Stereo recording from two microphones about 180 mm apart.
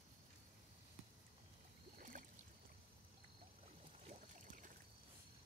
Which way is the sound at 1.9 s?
45° right (ahead or behind).